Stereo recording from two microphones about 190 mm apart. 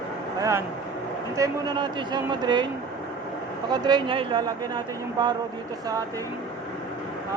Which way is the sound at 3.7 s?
20° right (ahead or behind).